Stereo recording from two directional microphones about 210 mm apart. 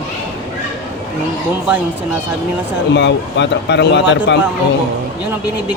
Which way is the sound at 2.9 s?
55° left (ahead or behind).